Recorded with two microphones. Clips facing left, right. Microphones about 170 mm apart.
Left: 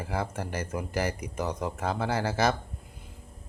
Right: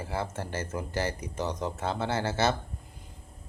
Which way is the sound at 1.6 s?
25° right (ahead or behind).